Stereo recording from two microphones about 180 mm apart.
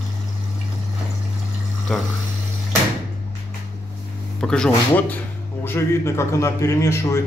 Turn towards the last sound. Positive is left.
turn(degrees=15)  # may be behind; listen again after turning